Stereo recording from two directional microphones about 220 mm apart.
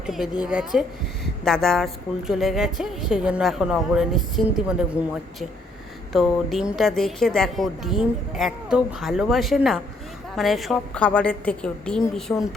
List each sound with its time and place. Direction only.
0.0 s a woman's voice: centre (ahead or behind)
6.1 s a woman's voice: centre (ahead or behind)